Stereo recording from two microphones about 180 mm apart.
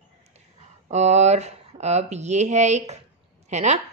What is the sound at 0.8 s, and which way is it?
A woman's voice, 40° right (ahead or behind).